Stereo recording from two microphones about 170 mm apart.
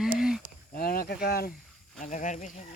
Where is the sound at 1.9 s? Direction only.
50° left (ahead or behind).